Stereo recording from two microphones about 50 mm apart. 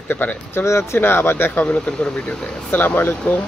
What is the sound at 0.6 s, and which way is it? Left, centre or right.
Speech, left.